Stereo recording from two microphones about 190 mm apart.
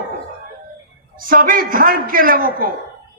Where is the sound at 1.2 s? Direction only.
45° right (ahead or behind).